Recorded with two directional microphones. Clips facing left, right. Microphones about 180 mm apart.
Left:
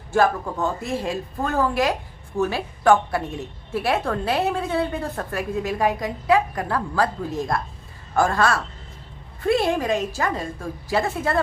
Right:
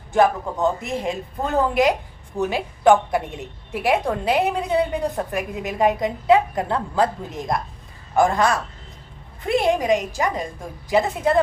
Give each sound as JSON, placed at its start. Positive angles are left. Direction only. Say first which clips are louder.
{"t": 0.1, "sound": "a woman's voice", "louder": "right 2 dB", "side_deg": -20}